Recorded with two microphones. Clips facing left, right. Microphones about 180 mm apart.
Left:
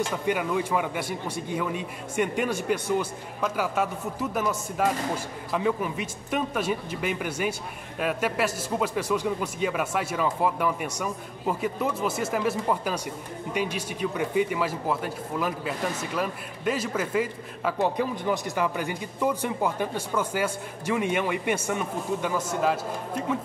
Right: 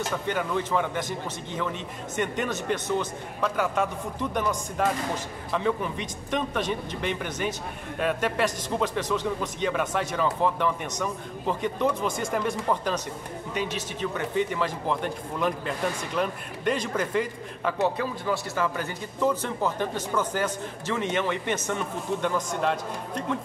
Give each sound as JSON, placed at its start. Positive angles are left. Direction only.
{"t": 0.3, "sound": "speech", "side_deg": 10}